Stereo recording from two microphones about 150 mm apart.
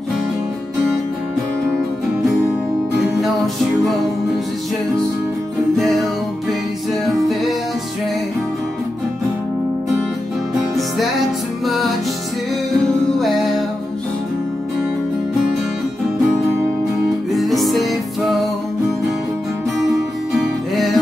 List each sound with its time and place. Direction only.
7.1 s music: centre (ahead or behind)
11.6 s music: centre (ahead or behind)
17.3 s music: centre (ahead or behind)
20.7 s music: centre (ahead or behind)